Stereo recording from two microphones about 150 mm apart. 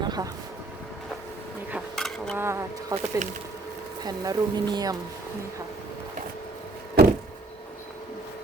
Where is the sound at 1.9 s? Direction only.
5° left (ahead or behind).